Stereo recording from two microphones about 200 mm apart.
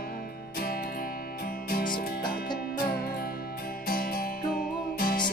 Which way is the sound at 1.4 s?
45° left (ahead or behind).